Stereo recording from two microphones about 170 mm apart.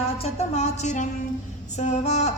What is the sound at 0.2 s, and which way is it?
Music, 40° left (ahead or behind).